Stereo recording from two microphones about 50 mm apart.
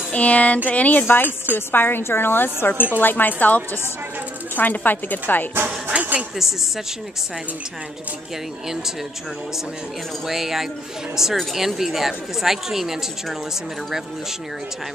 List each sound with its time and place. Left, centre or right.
0.1 s a sound: left
0.7 s a woman's voice: left
1.0 s a woman's voice: left
5.9 s speech: right
10.2 s speech: centre